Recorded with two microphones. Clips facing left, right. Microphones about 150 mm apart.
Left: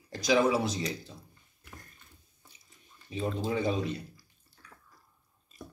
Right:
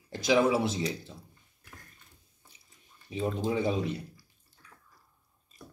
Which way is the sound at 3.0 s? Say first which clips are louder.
Right 2 dB; 20° right (ahead or behind).